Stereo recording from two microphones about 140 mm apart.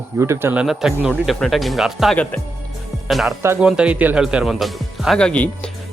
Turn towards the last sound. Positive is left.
turn(degrees=10)  # may be behind; listen again after turning